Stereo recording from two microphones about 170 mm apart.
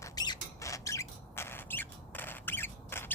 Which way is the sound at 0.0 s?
20° left (ahead or behind).